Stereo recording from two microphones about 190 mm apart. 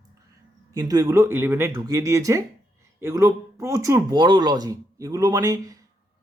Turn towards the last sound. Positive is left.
turn(degrees=-20)  # may be behind; listen again after turning